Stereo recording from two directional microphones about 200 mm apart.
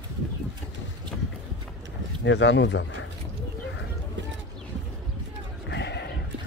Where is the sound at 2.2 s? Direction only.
65° left (ahead or behind).